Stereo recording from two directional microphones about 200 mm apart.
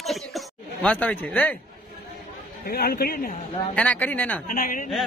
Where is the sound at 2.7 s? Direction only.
50° left (ahead or behind).